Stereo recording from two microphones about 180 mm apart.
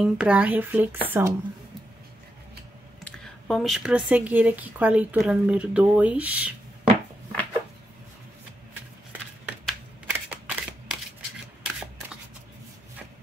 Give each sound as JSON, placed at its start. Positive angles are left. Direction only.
{"t": 0.0, "sound": "speech", "side_deg": -5}
{"t": 3.0, "sound": "speech", "side_deg": 5}
{"t": 9.5, "sound": "single-lens reflex camera", "side_deg": -10}